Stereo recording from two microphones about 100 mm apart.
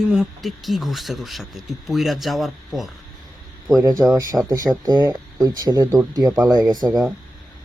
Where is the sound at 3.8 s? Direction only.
30° right (ahead or behind).